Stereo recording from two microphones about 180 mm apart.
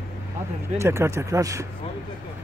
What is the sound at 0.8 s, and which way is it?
Speech, 15° right (ahead or behind).